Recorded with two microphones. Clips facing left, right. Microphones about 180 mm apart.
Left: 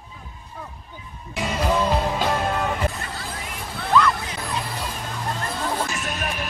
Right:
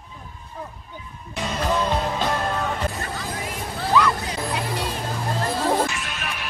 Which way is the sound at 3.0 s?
40° right (ahead or behind).